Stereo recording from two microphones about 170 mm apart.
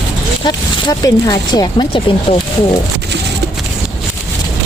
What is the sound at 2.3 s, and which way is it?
Speech, 40° left (ahead or behind).